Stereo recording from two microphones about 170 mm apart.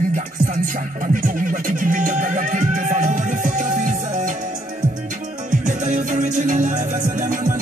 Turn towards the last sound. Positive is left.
turn(degrees=-50)  # may be behind; listen again after turning